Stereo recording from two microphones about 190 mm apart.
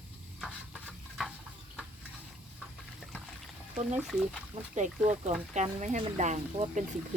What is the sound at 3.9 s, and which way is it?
Speech, centre (ahead or behind).